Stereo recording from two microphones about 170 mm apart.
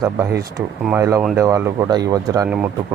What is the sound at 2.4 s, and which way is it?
Speech, 10° right (ahead or behind).